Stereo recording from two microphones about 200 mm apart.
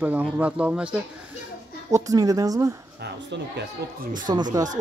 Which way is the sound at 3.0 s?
55° right (ahead or behind).